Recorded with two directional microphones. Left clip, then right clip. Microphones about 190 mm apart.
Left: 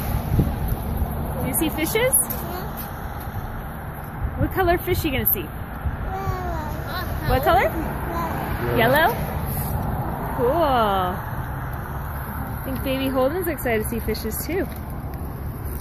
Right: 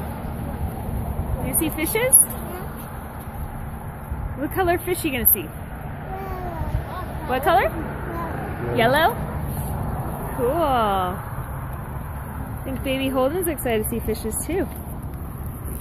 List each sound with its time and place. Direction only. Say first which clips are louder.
1.5 s speech: left 1 dB; 5° right (ahead or behind)
4.6 s speech: left 1 dB; 5° right (ahead or behind)
7.2 s speech: even; 15° right (ahead or behind)
8.4 s a sound: left 3 dB; 50° left (ahead or behind)
8.7 s speech: even; 15° right (ahead or behind)
10.5 s speech: left 1 dB; 5° right (ahead or behind)
12.6 s speech: right 1 dB; 10° right (ahead or behind)